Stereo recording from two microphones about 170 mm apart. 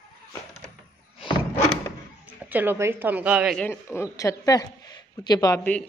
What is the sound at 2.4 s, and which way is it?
A woman's voice, 10° right (ahead or behind).